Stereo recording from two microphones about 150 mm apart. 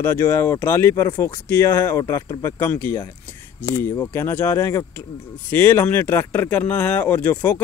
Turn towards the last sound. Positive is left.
turn(degrees=15)  # may be behind; listen again after turning